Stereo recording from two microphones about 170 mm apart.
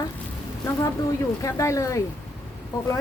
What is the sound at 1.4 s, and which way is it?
Speech, 20° left (ahead or behind).